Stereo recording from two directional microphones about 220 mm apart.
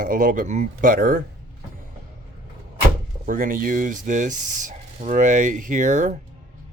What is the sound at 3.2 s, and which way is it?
Speech, 40° right (ahead or behind).